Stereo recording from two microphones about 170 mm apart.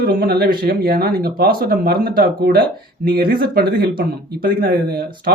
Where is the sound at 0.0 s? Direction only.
65° right (ahead or behind).